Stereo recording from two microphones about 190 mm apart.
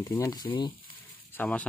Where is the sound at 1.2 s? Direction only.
10° left (ahead or behind).